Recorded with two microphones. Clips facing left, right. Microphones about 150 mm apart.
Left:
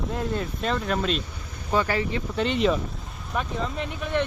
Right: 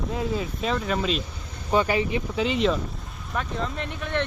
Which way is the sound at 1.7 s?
15° right (ahead or behind).